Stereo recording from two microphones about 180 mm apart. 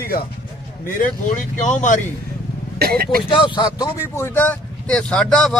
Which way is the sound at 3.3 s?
25° left (ahead or behind).